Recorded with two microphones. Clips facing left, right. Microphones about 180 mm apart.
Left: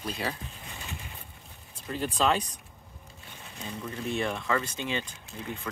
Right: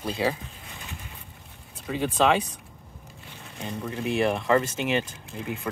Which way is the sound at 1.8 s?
75° right (ahead or behind).